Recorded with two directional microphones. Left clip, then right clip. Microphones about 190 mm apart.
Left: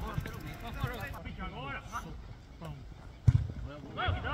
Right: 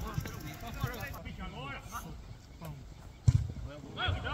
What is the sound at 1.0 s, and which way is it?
Speech, 5° right (ahead or behind).